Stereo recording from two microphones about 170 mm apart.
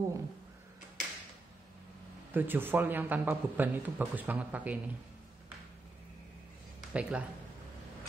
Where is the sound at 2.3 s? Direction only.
10° right (ahead or behind).